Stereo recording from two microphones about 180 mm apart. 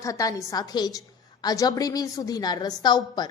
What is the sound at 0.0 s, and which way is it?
A woman's voice, 20° left (ahead or behind).